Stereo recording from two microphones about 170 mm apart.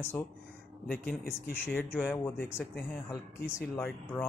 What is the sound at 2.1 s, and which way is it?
Speech, 10° left (ahead or behind).